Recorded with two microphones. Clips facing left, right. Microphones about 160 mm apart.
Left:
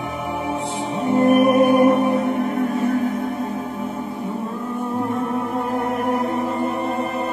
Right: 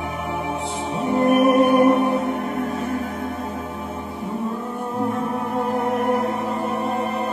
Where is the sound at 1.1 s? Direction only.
Centre (ahead or behind).